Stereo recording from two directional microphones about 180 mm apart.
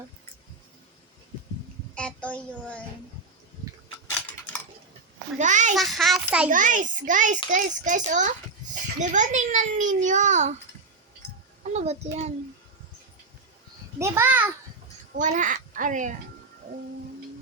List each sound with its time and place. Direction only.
2.0 s a child's voice: 5° left (ahead or behind)
5.4 s a child's voice: 45° right (ahead or behind)
5.7 s a child's voice: centre (ahead or behind)
6.5 s a child's voice: 45° right (ahead or behind)
11.7 s a child's voice: 40° right (ahead or behind)
14.0 s a child's voice: 10° right (ahead or behind)
15.2 s a child's voice: 45° right (ahead or behind)